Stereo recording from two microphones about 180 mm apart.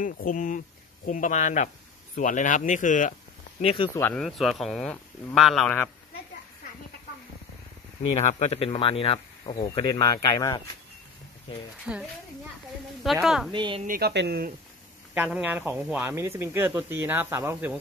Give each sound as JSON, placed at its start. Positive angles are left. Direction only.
{"t": 0.0, "sound": "speech", "side_deg": 45}
{"t": 3.6, "sound": "speech", "side_deg": 30}
{"t": 4.1, "sound": "speech", "side_deg": 0}
{"t": 8.1, "sound": "speech", "side_deg": 40}
{"t": 11.9, "sound": "speech", "side_deg": -5}
{"t": 13.5, "sound": "speech", "side_deg": -30}
{"t": 13.8, "sound": "speech", "side_deg": -60}
{"t": 15.1, "sound": "speech", "side_deg": -10}